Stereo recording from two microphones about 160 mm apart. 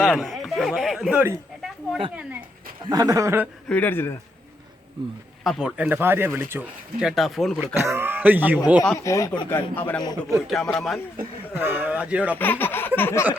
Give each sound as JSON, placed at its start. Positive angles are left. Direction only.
{"t": 0.0, "sound": "speech", "side_deg": 0}
{"t": 2.9, "sound": "speech", "side_deg": -20}
{"t": 3.7, "sound": "speech", "side_deg": 10}
{"t": 5.4, "sound": "speech", "side_deg": 0}
{"t": 7.2, "sound": "speech", "side_deg": 0}
{"t": 7.6, "sound": "speech", "side_deg": -15}
{"t": 9.0, "sound": "speech", "side_deg": 20}
{"t": 9.7, "sound": "speech", "side_deg": 10}
{"t": 10.0, "sound": "speech", "side_deg": 25}
{"t": 10.4, "sound": "speech", "side_deg": 0}
{"t": 11.5, "sound": "speech", "side_deg": -10}
{"t": 12.4, "sound": "speech", "side_deg": 10}